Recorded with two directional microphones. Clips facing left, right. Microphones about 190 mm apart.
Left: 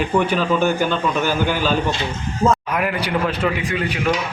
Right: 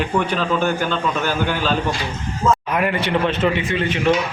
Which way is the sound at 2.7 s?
Centre (ahead or behind).